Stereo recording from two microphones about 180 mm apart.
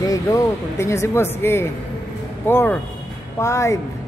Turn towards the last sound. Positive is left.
turn(degrees=15)  # may be behind; listen again after turning